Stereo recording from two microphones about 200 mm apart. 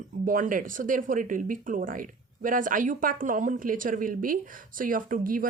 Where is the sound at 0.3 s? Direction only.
40° right (ahead or behind).